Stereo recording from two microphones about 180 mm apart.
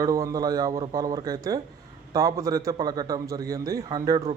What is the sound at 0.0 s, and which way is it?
Speech, 20° right (ahead or behind).